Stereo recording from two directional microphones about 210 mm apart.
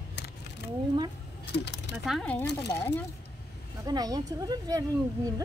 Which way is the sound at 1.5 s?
55° left (ahead or behind).